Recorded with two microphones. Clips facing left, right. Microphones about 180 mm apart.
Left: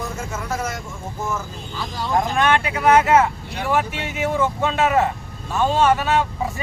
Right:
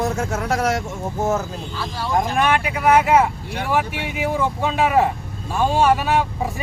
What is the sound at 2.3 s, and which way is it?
Speech, 10° right (ahead or behind).